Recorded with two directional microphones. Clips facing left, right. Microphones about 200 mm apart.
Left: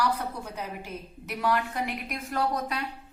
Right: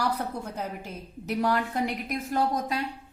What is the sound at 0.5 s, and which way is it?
A woman's voice, 45° right (ahead or behind).